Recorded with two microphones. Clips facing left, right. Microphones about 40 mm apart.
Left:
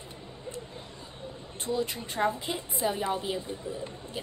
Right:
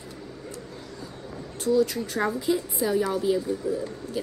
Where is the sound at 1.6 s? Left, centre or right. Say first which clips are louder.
Right 8 dB; left.